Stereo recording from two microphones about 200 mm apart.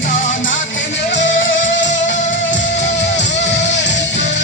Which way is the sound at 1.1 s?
65° left (ahead or behind).